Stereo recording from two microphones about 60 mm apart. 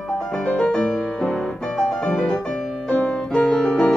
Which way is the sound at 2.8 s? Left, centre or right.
Centre.